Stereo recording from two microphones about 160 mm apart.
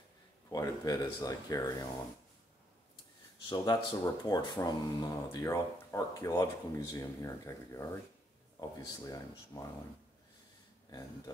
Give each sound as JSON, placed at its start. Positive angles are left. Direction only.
{"t": 0.5, "sound": "speech", "side_deg": 20}
{"t": 3.4, "sound": "speech", "side_deg": 25}